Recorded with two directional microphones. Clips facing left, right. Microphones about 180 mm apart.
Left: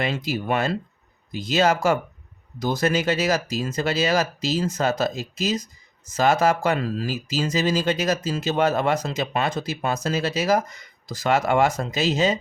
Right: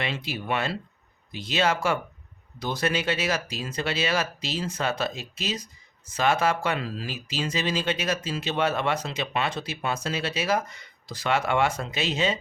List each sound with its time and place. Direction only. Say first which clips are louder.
0.0 s speech: left 6 dB; 45° left (ahead or behind)